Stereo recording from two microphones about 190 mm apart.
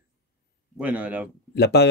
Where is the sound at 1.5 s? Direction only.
60° left (ahead or behind).